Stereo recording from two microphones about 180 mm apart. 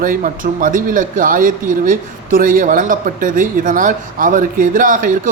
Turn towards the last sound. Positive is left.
turn(degrees=-50)  # may be behind; listen again after turning